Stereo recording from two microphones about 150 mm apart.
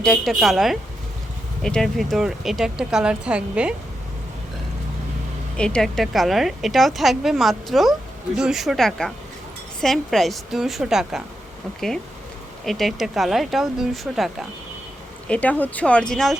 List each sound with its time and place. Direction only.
0.0 s a woman's voice: centre (ahead or behind)
5.5 s a woman's voice: 5° left (ahead or behind)
12.6 s a woman's voice: centre (ahead or behind)